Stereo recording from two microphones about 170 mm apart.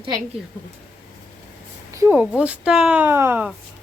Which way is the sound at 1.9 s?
15° right (ahead or behind).